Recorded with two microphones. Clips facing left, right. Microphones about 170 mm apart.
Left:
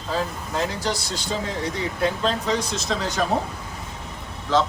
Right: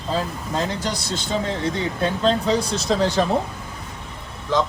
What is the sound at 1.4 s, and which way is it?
Speech, 30° right (ahead or behind).